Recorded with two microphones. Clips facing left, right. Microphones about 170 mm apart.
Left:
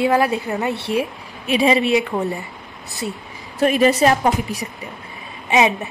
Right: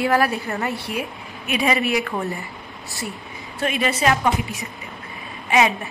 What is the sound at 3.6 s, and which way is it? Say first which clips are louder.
Speech: left 7 dB; 40° left (ahead or behind).